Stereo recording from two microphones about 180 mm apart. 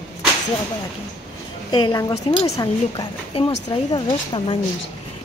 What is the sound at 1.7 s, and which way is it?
A woman's voice, 20° left (ahead or behind).